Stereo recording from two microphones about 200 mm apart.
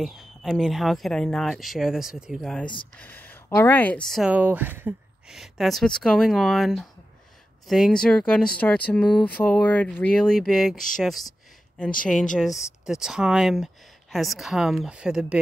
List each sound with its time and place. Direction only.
0.0 s speech: centre (ahead or behind)
12.8 s speech: 5° right (ahead or behind)